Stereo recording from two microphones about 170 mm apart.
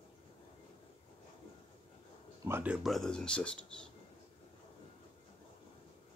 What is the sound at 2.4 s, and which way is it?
Speech, 10° right (ahead or behind).